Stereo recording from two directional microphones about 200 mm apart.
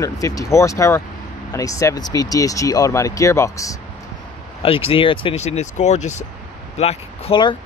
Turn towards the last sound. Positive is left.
turn(degrees=25)  # may be behind; listen again after turning